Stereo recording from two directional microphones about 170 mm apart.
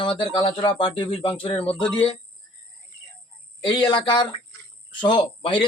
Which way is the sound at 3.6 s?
30° left (ahead or behind).